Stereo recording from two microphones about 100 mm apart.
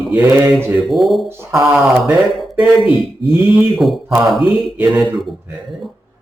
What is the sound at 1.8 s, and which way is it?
Speech, 5° right (ahead or behind).